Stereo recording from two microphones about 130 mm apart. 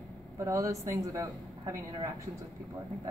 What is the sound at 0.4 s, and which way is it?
Speech, 25° right (ahead or behind).